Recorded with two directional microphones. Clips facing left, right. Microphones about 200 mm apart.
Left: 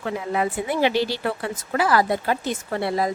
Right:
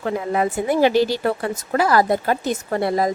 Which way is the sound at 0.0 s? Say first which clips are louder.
Right 3 dB; 45° right (ahead or behind).